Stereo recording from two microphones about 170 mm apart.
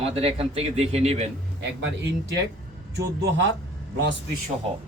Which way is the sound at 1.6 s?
90° right.